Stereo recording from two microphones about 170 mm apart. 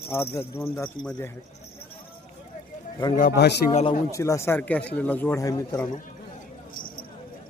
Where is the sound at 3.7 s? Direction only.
40° left (ahead or behind).